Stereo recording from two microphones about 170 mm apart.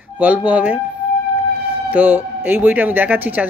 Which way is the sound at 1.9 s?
10° right (ahead or behind).